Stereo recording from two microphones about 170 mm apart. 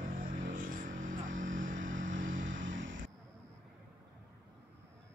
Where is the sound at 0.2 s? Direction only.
50° right (ahead or behind).